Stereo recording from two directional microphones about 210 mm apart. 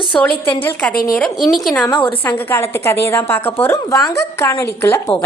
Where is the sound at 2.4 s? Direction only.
10° left (ahead or behind).